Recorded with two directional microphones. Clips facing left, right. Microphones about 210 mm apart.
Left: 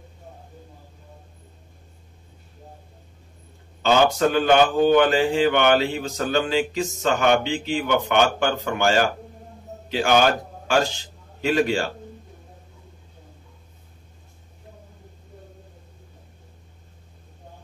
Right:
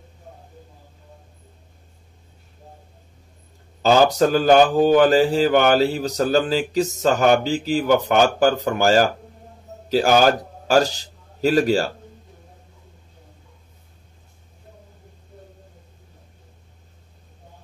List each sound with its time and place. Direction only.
3.8 s a man's voice: 40° right (ahead or behind)